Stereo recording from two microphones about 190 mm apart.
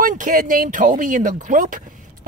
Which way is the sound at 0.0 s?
45° right (ahead or behind).